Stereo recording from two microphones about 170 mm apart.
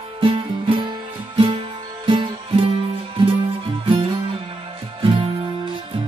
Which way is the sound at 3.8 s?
30° right (ahead or behind).